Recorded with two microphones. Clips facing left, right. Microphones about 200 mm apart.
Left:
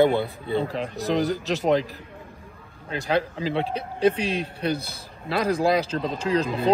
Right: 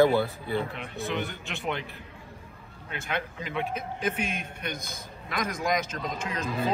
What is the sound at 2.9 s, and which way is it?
A man's voice, 35° left (ahead or behind).